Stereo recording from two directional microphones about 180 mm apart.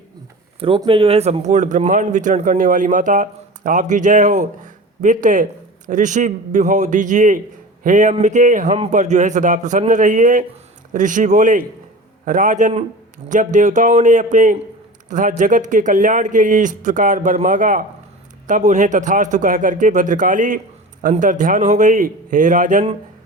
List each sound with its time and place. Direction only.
0.6 s speech: 30° right (ahead or behind)